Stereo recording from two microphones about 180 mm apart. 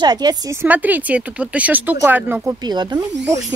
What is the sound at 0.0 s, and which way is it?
Speech, 20° right (ahead or behind).